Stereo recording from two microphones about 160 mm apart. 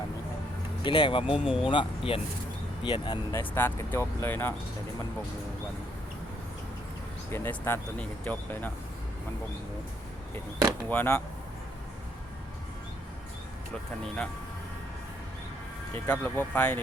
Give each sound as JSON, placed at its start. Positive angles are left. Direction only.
{"t": 0.9, "sound": "speech", "side_deg": 30}
{"t": 1.3, "sound": "speech", "side_deg": -5}
{"t": 1.6, "sound": "speech", "side_deg": 30}
{"t": 3.3, "sound": "speech", "side_deg": 15}
{"t": 7.3, "sound": "speech", "side_deg": 15}
{"t": 10.8, "sound": "speech", "side_deg": 10}
{"t": 16.0, "sound": "speech", "side_deg": 10}